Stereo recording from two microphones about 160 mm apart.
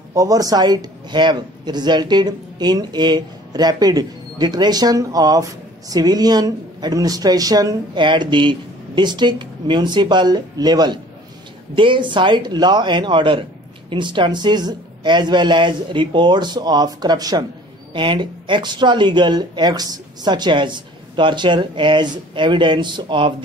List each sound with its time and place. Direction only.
0.1 s speech: 20° right (ahead or behind)